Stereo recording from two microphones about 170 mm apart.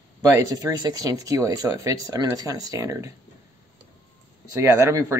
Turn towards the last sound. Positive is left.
turn(degrees=-20)  # may be behind; listen again after turning